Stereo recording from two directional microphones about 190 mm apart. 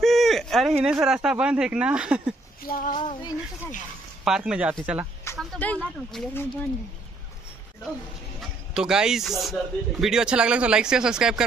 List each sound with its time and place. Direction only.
0.0 s a sound: centre (ahead or behind)
0.7 s speech: 5° right (ahead or behind)
2.6 s child singing: 45° left (ahead or behind)
3.0 s speech: 25° left (ahead or behind)
4.2 s speech: 5° right (ahead or behind)
5.4 s speech: 5° left (ahead or behind)
8.4 s speech: 5° right (ahead or behind)